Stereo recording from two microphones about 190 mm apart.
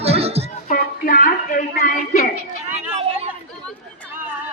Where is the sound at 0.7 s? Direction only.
50° left (ahead or behind).